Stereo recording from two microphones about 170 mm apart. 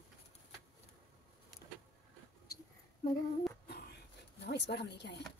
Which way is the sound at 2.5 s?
65° left (ahead or behind).